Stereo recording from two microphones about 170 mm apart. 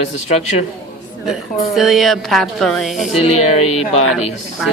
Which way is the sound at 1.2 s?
Centre (ahead or behind).